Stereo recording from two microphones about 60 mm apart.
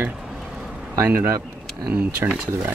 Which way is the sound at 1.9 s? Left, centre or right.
Right.